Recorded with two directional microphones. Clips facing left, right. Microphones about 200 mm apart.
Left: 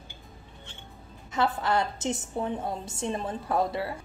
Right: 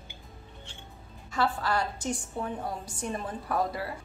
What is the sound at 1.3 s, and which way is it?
A woman's voice, 20° left (ahead or behind).